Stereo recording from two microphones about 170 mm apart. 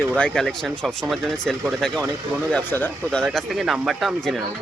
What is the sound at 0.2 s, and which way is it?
Speech, 5° left (ahead or behind).